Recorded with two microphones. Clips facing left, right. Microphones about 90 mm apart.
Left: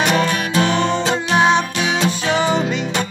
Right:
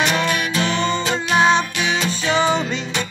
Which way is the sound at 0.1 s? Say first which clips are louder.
Left 3 dB; 35° left (ahead or behind).